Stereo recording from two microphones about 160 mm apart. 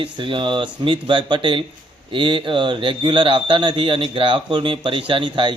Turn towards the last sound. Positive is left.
turn(degrees=-30)  # may be behind; listen again after turning